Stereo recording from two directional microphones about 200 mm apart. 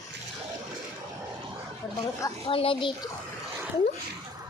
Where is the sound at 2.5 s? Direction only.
25° left (ahead or behind).